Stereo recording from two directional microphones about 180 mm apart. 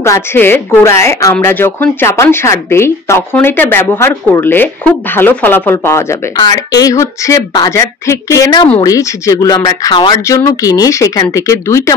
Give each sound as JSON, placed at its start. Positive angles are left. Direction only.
{"t": 0.0, "sound": "speech", "side_deg": 15}